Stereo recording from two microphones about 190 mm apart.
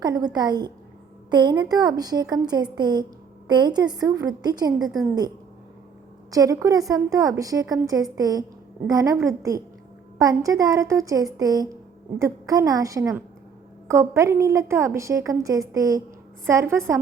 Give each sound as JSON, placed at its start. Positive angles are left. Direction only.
{"t": 0.0, "sound": "a woman's voice", "side_deg": -20}
{"t": 6.3, "sound": "a woman's voice", "side_deg": -15}